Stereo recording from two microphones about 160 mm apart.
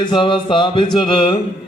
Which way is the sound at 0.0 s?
30° left (ahead or behind).